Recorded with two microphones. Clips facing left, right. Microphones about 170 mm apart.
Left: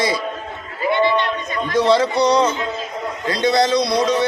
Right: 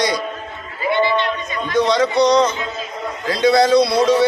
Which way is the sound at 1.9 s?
5° left (ahead or behind).